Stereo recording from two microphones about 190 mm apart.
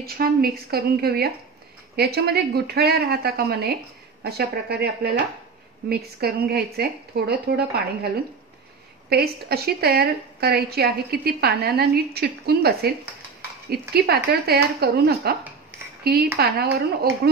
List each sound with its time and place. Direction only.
0.0 s a woman's voice: 55° right (ahead or behind)
9.1 s a woman's voice: 55° right (ahead or behind)